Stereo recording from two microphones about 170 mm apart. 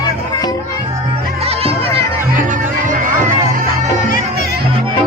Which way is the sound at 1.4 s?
35° right (ahead or behind).